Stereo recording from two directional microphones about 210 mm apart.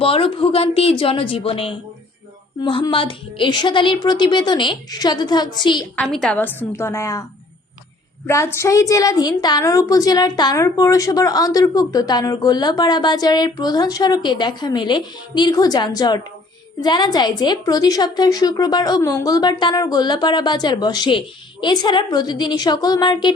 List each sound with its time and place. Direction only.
0.0 s a woman's voice: 25° left (ahead or behind)
6.0 s a woman's voice: centre (ahead or behind)
8.3 s a woman's voice: 15° left (ahead or behind)